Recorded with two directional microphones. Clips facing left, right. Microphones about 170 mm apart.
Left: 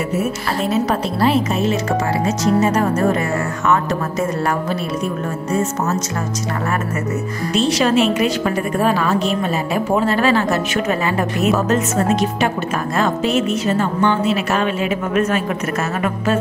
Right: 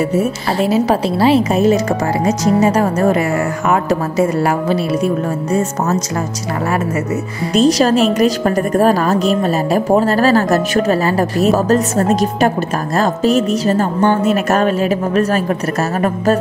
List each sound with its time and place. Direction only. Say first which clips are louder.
0.2 s a woman's voice: right 4 dB; 30° right (ahead or behind)
1.0 s a woman's voice: right 4 dB; 5° right (ahead or behind)
1.3 s a woman's voice: right 6 dB; 40° right (ahead or behind)
5.5 s a woman's voice: right 2 dB; 35° right (ahead or behind)
7.5 s a woman's voice: right 4 dB; 40° right (ahead or behind)